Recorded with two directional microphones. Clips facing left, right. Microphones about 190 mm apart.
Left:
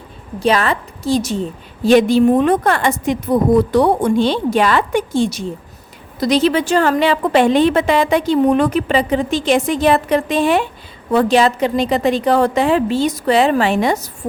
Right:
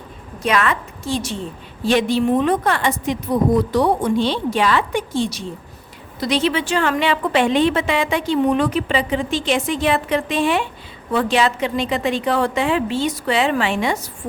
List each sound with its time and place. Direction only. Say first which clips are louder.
0.3 s a woman's voice: left 4 dB; 35° left (ahead or behind)